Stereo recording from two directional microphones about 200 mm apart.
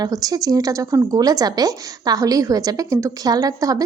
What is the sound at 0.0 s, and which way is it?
A woman's voice, 20° right (ahead or behind).